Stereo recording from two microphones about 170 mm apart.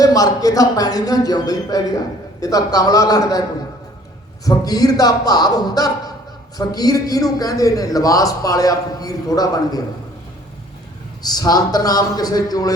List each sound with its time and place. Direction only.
0.0 s a man's voice: 20° left (ahead or behind)
4.4 s a man's voice: 20° left (ahead or behind)
11.2 s a man's voice: 25° left (ahead or behind)